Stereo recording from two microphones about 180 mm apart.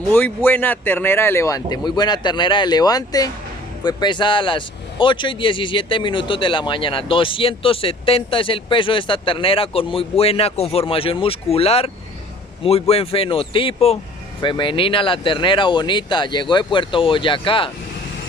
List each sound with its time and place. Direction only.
0.1 s speech: 10° left (ahead or behind); by 17.6 s 30° left (ahead or behind)